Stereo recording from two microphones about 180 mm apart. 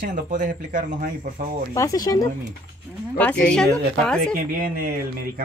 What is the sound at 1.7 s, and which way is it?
Speech, 20° left (ahead or behind).